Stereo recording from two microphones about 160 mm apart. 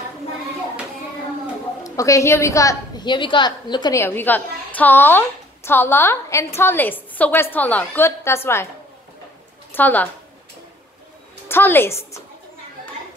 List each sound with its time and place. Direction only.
1.8 s a woman's voice: 20° left (ahead or behind)
4.0 s a woman's voice: 15° left (ahead or behind)
9.7 s a woman's voice: 10° left (ahead or behind)
11.4 s a woman's voice: 15° left (ahead or behind)